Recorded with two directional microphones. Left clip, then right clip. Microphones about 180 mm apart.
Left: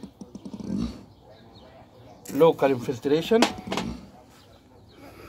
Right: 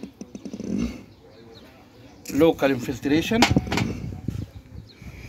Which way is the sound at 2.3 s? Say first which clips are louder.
Even; 30° left (ahead or behind).